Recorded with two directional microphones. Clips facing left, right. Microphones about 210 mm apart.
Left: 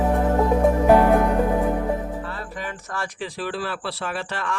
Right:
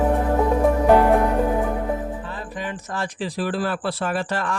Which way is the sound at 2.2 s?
20° right (ahead or behind).